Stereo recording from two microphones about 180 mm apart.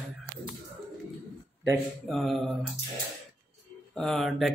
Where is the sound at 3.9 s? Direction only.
5° left (ahead or behind).